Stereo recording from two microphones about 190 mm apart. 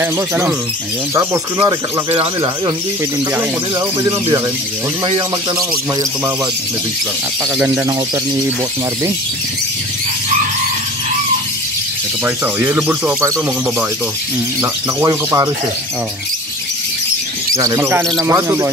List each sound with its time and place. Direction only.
0.0 s speech: 10° right (ahead or behind)
5.0 s speech: 25° right (ahead or behind)
7.5 s speech: 10° right (ahead or behind)
12.5 s speech: 10° right (ahead or behind)
14.6 s speech: 15° right (ahead or behind)
17.6 s speech: 15° right (ahead or behind)